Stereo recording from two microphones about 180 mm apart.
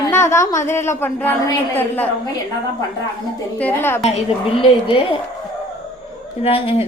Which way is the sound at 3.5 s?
10° left (ahead or behind).